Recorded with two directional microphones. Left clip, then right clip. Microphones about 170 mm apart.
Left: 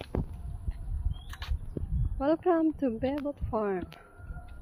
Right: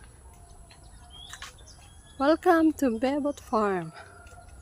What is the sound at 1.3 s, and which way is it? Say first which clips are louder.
Bird: right 2 dB; 55° left (ahead or behind).